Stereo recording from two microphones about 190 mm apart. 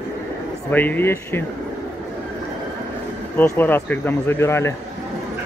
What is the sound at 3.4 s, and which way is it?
Speech, 10° left (ahead or behind).